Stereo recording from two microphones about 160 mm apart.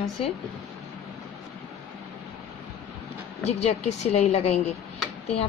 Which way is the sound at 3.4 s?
40° left (ahead or behind).